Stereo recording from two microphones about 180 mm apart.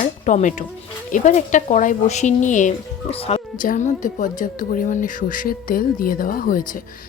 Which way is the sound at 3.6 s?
45° left (ahead or behind).